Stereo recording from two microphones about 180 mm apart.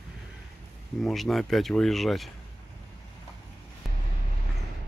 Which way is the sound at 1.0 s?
Centre (ahead or behind).